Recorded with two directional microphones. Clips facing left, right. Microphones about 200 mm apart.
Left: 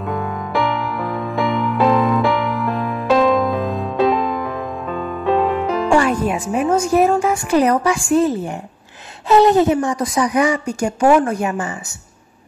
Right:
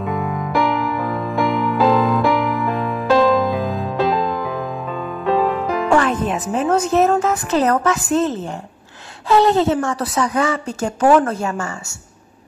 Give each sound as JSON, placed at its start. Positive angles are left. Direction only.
{"t": 0.0, "sound": "music", "side_deg": 0}
{"t": 5.9, "sound": "a woman's voice", "side_deg": 10}